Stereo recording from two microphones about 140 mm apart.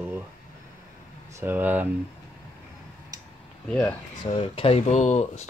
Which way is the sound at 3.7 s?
10° left (ahead or behind).